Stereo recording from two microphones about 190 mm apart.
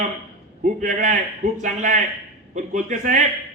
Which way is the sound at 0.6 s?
40° right (ahead or behind).